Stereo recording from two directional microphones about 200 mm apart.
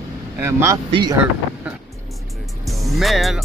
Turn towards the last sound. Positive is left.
turn(degrees=0)  # may be behind; listen again after turning